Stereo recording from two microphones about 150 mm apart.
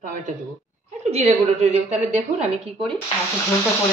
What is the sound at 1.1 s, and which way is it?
A woman's voice, 45° right (ahead or behind).